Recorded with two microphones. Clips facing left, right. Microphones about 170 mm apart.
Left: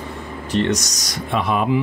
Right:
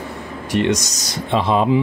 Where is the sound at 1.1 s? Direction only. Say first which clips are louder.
Right 3 dB; 30° right (ahead or behind).